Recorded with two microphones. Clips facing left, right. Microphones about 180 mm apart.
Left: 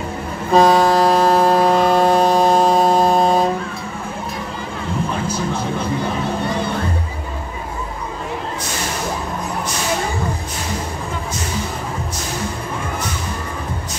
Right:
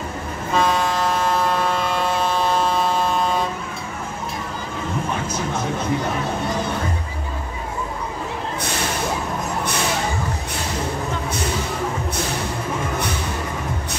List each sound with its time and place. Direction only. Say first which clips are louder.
0.5 s vehicle: left 8 dB; 35° left (ahead or behind)